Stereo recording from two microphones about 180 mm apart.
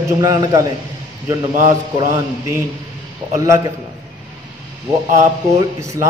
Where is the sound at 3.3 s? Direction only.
20° right (ahead or behind).